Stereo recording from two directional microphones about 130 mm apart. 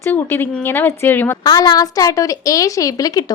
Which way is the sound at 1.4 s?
30° left (ahead or behind).